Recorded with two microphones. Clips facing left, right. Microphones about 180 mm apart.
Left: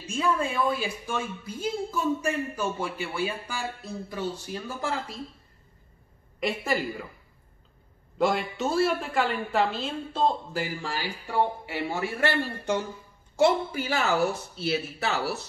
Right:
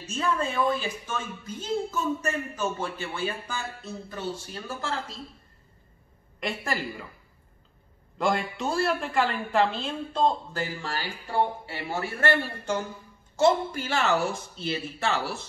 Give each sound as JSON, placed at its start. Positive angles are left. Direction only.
{"t": 0.0, "sound": "speech", "side_deg": 10}
{"t": 6.4, "sound": "a woman's voice", "side_deg": 5}
{"t": 8.2, "sound": "a woman's voice", "side_deg": 5}